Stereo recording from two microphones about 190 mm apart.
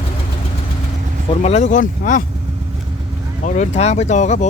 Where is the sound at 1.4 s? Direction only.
35° left (ahead or behind).